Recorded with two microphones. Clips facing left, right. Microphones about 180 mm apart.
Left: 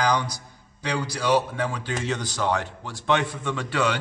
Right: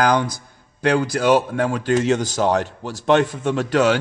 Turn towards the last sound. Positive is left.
turn(degrees=-40)  # may be behind; listen again after turning